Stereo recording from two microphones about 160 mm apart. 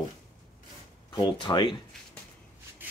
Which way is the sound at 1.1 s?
25° left (ahead or behind).